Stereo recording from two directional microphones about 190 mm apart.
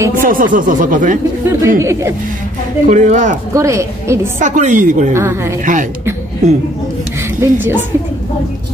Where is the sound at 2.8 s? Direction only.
40° right (ahead or behind).